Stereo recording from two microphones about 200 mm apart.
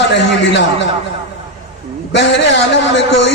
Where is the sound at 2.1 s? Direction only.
65° left (ahead or behind).